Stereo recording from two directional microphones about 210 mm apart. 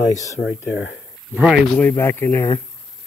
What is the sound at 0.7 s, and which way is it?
Speech, 60° left (ahead or behind).